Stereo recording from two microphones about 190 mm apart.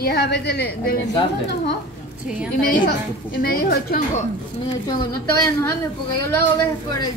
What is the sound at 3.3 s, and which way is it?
Speech, 55° left (ahead or behind).